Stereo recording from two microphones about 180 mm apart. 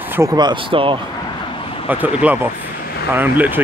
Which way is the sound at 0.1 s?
15° right (ahead or behind).